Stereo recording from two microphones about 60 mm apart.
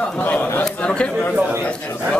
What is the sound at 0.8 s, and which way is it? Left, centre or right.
Speech, centre.